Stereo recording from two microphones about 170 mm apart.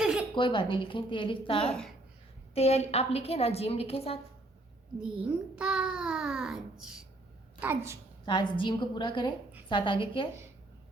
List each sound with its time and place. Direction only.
0.0 s a sound: 5° right (ahead or behind)
0.3 s a woman's voice: 30° left (ahead or behind)
4.9 s a child's voice: 5° right (ahead or behind)
8.2 s a woman's voice: 25° left (ahead or behind)